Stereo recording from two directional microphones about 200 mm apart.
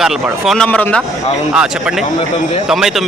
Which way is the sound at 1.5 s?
5° right (ahead or behind).